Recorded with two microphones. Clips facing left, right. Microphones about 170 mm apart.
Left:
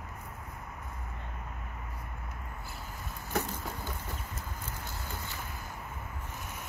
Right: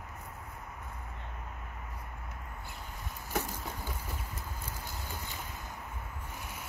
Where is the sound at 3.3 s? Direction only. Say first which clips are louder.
Left 2 dB; 10° right (ahead or behind).